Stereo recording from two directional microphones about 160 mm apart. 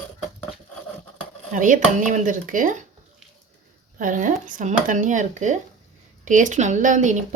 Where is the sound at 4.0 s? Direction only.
55° right (ahead or behind).